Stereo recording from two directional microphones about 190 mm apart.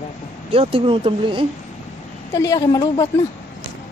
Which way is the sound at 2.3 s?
15° left (ahead or behind).